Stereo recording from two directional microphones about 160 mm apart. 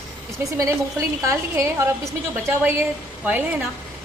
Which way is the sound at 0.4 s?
20° right (ahead or behind).